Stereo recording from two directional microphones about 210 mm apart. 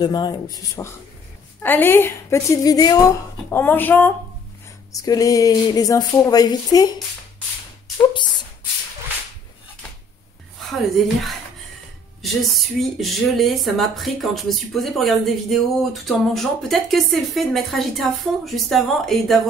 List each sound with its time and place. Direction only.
0.0 s speech: 20° left (ahead or behind)
12.2 s speech: centre (ahead or behind)